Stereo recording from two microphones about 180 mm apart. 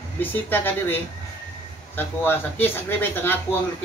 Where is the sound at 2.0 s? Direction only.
10° left (ahead or behind).